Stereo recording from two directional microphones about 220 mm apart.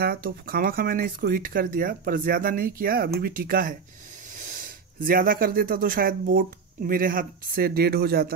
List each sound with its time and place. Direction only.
0.0 s speech: 45° right (ahead or behind)